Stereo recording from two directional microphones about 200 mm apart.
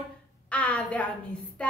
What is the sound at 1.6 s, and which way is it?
Music, 5° left (ahead or behind).